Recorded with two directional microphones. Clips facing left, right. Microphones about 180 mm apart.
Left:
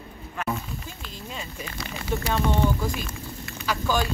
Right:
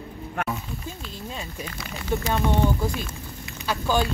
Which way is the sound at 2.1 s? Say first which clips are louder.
Right 1 dB; 15° right (ahead or behind).